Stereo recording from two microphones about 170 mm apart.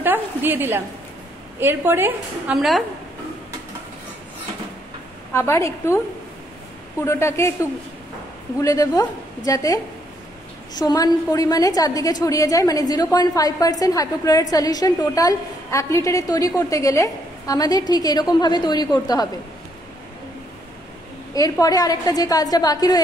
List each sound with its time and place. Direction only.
0.0 s a sound: 10° right (ahead or behind)
1.6 s a woman's voice: 15° right (ahead or behind)
5.3 s a woman's voice: 15° left (ahead or behind)
7.0 s a woman's voice: 15° left (ahead or behind)
8.5 s a woman's voice: 20° left (ahead or behind)
10.8 s a woman's voice: 25° left (ahead or behind)
21.4 s a woman's voice: 20° left (ahead or behind)